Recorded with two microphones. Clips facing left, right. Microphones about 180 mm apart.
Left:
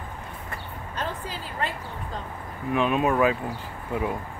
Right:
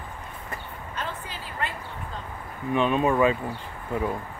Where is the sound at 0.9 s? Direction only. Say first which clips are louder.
Left 3 dB; 40° left (ahead or behind).